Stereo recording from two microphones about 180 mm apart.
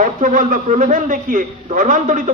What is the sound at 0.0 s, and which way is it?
A man's voice, 45° right (ahead or behind).